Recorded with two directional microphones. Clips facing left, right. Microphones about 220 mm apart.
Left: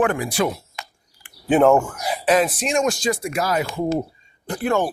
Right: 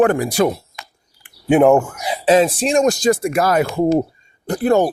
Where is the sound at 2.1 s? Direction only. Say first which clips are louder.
Right 5 dB; 25° right (ahead or behind); by 3.8 s 55° right (ahead or behind).